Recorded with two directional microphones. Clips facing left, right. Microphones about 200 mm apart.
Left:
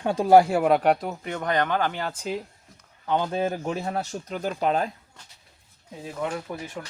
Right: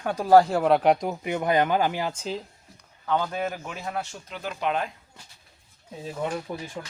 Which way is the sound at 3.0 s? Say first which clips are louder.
Left 2 dB; 20° left (ahead or behind).